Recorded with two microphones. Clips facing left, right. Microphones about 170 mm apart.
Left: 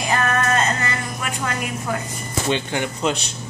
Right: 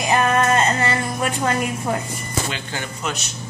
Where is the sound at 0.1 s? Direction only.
20° right (ahead or behind).